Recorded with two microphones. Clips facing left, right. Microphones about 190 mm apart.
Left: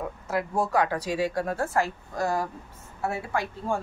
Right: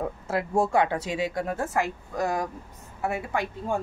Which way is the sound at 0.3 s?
25° right (ahead or behind).